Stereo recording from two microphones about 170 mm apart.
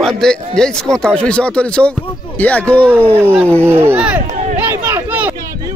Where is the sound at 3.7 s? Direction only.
15° right (ahead or behind).